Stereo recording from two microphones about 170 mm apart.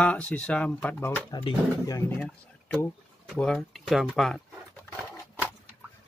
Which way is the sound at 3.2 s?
5° left (ahead or behind).